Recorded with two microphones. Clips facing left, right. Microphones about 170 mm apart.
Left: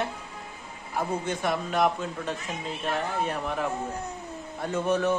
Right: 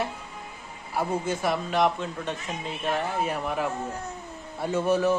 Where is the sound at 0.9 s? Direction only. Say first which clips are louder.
Right 2 dB; 5° right (ahead or behind).